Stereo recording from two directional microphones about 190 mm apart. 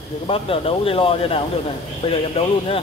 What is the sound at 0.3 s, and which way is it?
Speech, 30° left (ahead or behind).